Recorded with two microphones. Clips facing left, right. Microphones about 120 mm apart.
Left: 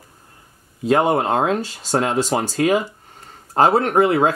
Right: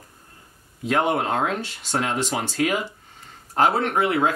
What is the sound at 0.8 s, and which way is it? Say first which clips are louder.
Speech: left 5 dB; 30° left (ahead or behind).